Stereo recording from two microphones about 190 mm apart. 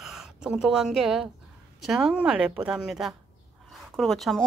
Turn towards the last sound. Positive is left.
turn(degrees=0)  # may be behind; listen again after turning